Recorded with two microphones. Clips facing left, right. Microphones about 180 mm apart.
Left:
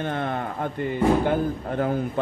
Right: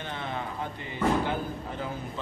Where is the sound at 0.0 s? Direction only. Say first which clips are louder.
Left 8 dB; 55° left (ahead or behind).